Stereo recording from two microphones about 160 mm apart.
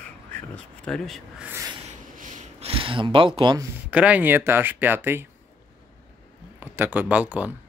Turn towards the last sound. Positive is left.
turn(degrees=-10)  # may be behind; listen again after turning